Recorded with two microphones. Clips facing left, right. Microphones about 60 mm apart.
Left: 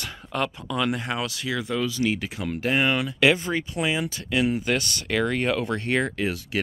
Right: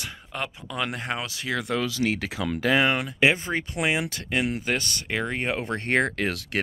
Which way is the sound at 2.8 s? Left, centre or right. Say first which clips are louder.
Left 1 dB; right.